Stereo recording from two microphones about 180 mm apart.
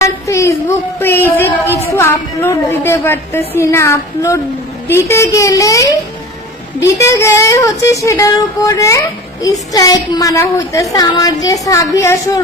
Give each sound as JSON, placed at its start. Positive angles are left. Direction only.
{"t": 0.0, "sound": "speech", "side_deg": 15}